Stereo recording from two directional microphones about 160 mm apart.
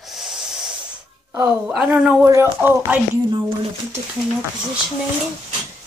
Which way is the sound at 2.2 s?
20° right (ahead or behind).